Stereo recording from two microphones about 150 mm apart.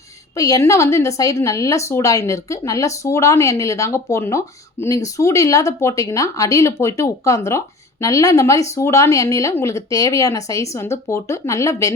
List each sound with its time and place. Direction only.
0.3 s speech: 25° left (ahead or behind)